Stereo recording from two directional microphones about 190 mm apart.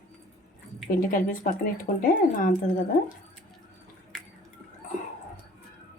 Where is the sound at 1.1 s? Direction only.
45° left (ahead or behind).